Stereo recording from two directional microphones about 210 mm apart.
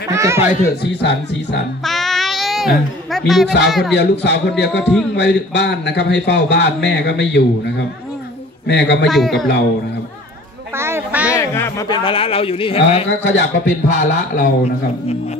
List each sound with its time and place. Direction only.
0.1 s speech: 15° right (ahead or behind)
1.9 s music: centre (ahead or behind)
3.6 s a man's voice: centre (ahead or behind)
3.9 s a man's voice: 55° left (ahead or behind)
9.0 s a man's voice: centre (ahead or behind)
10.8 s a sound: 10° right (ahead or behind)
11.2 s speech: 10° left (ahead or behind)
12.0 s a man's voice: 25° left (ahead or behind)
13.1 s a man's voice: 60° left (ahead or behind)
13.8 s speech: 35° left (ahead or behind)